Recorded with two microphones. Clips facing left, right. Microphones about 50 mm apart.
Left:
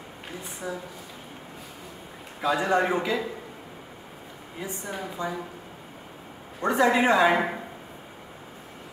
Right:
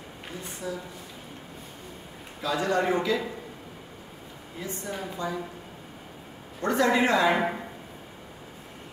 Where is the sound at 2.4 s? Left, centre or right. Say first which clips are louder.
Left 3 dB; left.